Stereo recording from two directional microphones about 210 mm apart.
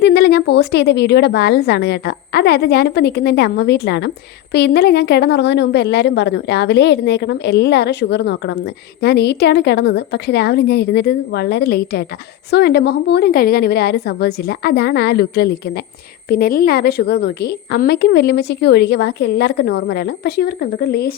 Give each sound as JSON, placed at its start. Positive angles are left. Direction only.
{"t": 0.0, "sound": "a woman's voice", "side_deg": 50}